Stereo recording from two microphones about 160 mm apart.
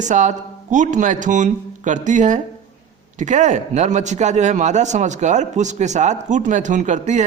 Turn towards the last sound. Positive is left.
turn(degrees=-50)  # may be behind; listen again after turning